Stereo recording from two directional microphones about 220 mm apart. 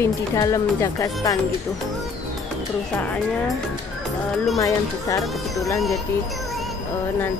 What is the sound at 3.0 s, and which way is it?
Speech, 10° left (ahead or behind).